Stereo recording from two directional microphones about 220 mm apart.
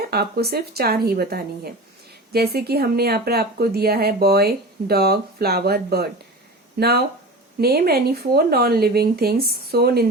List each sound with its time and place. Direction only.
0.1 s speech: 45° right (ahead or behind)